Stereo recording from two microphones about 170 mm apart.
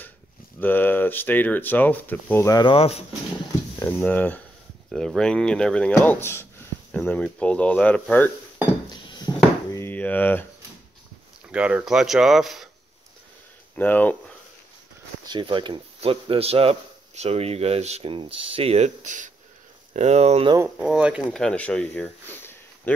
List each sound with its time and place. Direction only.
0.6 s speech: 10° left (ahead or behind)
2.6 s speech: 35° left (ahead or behind)
3.8 s speech: 10° left (ahead or behind)
8.8 s a sound: 25° left (ahead or behind)
11.5 s speech: 5° right (ahead or behind)
13.7 s speech: 10° left (ahead or behind)
15.2 s speech: 30° right (ahead or behind)
20.5 s speech: 10° right (ahead or behind)
21.3 s speech: 5° left (ahead or behind)